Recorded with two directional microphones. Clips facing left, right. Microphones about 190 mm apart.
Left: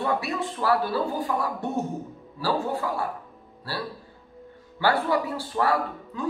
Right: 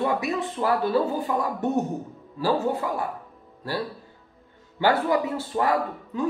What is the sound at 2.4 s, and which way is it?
Speech, 20° right (ahead or behind).